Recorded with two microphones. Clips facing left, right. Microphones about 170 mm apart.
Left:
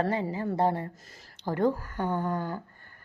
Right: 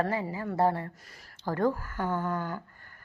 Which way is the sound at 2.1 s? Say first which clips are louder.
Left 1 dB; 35° left (ahead or behind).